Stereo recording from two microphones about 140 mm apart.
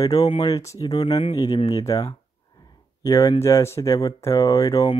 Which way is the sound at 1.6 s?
25° left (ahead or behind).